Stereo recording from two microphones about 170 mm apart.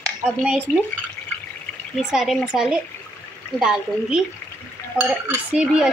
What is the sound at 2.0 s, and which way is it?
A woman's voice, 5° right (ahead or behind).